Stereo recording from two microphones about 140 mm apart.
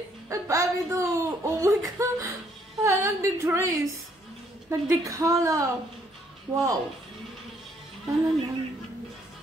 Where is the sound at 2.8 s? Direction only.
20° right (ahead or behind).